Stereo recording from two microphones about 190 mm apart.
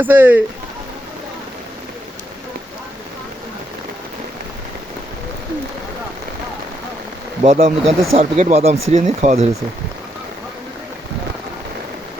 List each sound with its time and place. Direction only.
0.0 s speech: 10° right (ahead or behind)
7.4 s speech: 35° right (ahead or behind)